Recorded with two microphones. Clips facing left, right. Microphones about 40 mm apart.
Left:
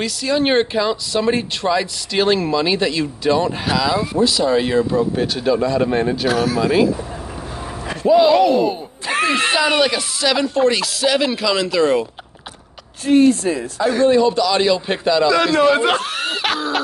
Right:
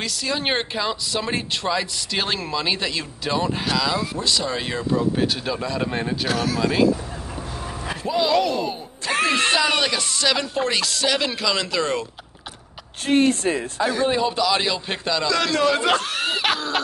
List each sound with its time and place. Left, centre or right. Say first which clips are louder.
0.0 s speech: left 6 dB; centre
7.8 s a sound: left 12 dB; centre
8.2 s speech: left 5 dB; centre
13.0 s speech: left 5 dB; right
14.0 s speech: left 9 dB; centre
16.2 s snicker: left 2 dB; centre